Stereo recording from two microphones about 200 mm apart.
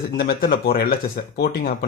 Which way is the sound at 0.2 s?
45° left (ahead or behind).